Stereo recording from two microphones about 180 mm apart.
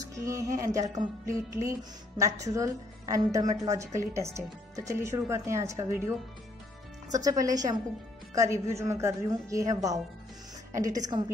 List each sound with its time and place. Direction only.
0.0 s speech: 15° right (ahead or behind)
7.2 s a woman's voice: 20° right (ahead or behind)